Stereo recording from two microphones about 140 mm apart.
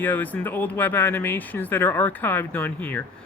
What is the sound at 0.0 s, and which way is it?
Speech, 15° left (ahead or behind).